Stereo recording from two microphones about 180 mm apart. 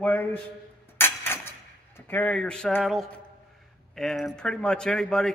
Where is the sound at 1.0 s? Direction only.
15° left (ahead or behind).